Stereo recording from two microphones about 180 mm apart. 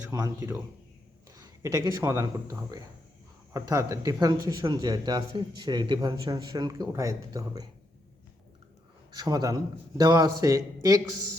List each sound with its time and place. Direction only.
0.1 s speech: 20° right (ahead or behind)
9.1 s speech: 20° right (ahead or behind)